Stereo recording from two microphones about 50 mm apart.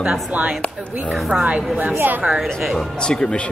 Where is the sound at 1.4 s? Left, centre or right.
Right.